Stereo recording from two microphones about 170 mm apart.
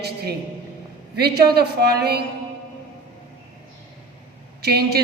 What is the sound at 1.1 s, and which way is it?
A man's voice, 70° right (ahead or behind).